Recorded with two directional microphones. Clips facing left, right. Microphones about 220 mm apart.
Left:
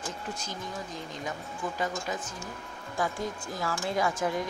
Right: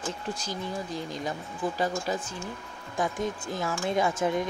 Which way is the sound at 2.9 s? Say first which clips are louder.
Right 3 dB; 20° right (ahead or behind).